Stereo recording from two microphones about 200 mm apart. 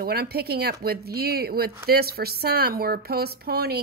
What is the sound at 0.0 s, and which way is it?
A woman's voice, 50° right (ahead or behind).